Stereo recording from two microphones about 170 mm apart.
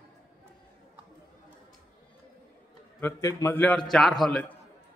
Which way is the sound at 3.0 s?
15° left (ahead or behind).